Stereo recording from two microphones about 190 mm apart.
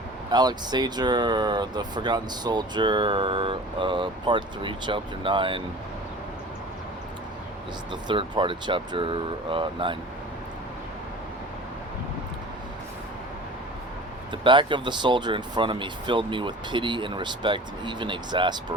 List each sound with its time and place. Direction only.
0.3 s speech: 20° right (ahead or behind)
7.9 s speech: 25° right (ahead or behind)
14.4 s speech: 25° right (ahead or behind)